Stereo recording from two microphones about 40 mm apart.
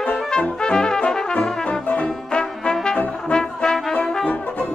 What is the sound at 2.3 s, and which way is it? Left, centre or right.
Brass instrument, centre.